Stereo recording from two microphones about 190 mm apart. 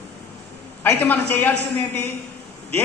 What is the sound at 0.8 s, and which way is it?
Speech, 10° left (ahead or behind).